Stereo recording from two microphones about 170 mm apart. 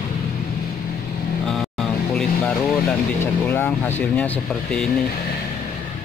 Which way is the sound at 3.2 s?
15° left (ahead or behind).